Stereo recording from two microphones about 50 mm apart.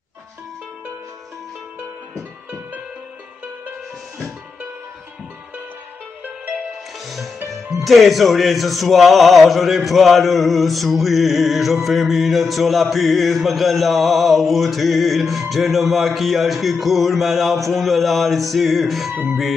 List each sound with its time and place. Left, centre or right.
6.2 s music: right
7.1 s music: centre
7.4 s speech: centre